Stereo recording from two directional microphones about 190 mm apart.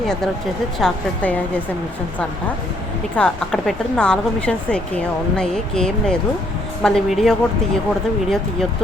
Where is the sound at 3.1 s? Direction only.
5° left (ahead or behind).